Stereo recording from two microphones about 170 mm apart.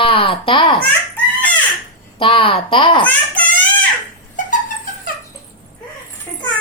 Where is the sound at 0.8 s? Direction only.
10° left (ahead or behind).